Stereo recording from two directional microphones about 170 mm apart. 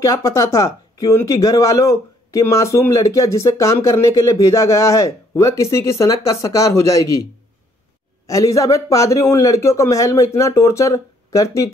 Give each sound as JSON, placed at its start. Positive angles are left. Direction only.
{"t": 0.0, "sound": "speech", "side_deg": 20}
{"t": 8.3, "sound": "a man's voice", "side_deg": 20}